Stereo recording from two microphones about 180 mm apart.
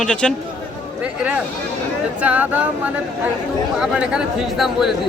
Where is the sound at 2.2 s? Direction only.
10° right (ahead or behind).